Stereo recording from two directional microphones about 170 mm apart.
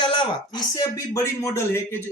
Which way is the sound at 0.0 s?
30° left (ahead or behind).